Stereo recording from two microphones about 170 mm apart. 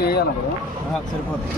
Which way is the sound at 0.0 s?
70° left (ahead or behind).